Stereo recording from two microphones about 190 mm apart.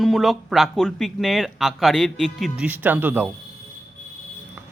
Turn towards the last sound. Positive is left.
turn(degrees=-10)  # may be behind; listen again after turning